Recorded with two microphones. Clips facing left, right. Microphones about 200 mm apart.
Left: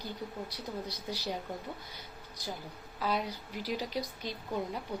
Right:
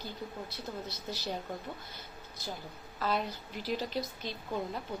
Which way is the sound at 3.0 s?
10° left (ahead or behind).